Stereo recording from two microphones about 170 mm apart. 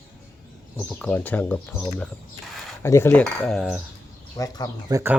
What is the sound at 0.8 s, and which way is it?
Speech, 5° left (ahead or behind).